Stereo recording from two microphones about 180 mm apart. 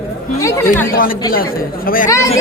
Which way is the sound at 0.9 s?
50° left (ahead or behind).